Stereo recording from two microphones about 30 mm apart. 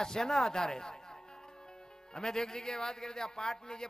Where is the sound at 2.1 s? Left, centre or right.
Left.